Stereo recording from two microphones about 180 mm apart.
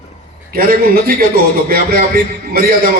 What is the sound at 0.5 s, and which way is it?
A man's voice, 55° right (ahead or behind).